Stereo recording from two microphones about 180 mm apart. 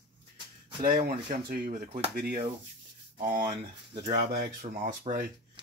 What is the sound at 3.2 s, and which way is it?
Speech, 55° right (ahead or behind).